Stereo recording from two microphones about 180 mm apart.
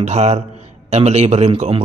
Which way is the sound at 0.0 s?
35° right (ahead or behind).